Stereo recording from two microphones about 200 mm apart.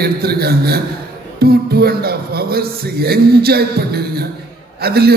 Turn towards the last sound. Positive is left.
turn(degrees=-55)  # may be behind; listen again after turning